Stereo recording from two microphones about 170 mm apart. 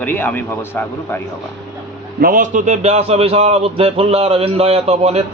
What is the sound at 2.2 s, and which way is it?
A man's voice, 55° right (ahead or behind).